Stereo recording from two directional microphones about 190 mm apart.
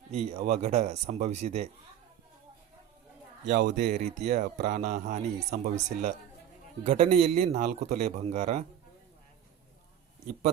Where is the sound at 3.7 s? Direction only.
40° right (ahead or behind).